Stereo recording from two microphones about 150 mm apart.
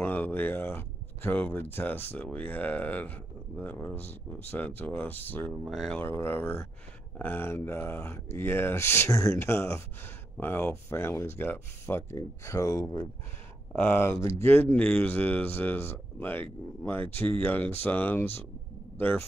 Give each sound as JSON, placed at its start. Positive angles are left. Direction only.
{"t": 0.0, "sound": "speech", "side_deg": 10}
{"t": 5.5, "sound": "speech", "side_deg": 0}
{"t": 5.9, "sound": "speech", "side_deg": 15}